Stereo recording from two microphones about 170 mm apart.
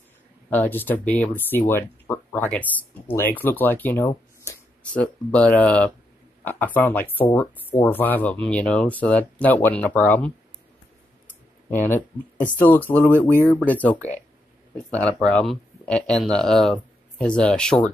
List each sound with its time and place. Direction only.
0.5 s speech: 10° left (ahead or behind)
11.7 s speech: 10° left (ahead or behind)